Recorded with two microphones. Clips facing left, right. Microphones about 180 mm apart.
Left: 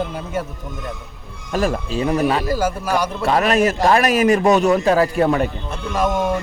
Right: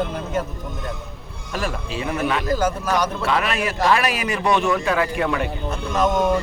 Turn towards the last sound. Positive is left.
turn(degrees=10)  # may be behind; listen again after turning